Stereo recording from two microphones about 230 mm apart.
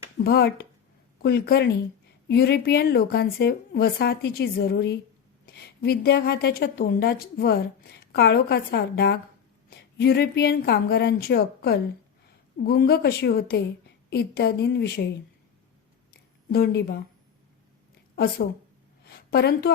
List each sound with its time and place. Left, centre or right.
0.3 s a woman's voice: left
16.5 s a woman's voice: left
19.0 s a sound: left